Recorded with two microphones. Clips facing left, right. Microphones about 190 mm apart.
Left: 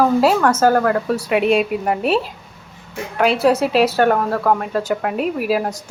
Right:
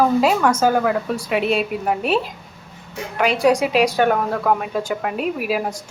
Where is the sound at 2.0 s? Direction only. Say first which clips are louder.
Left 2 dB; 40° left (ahead or behind).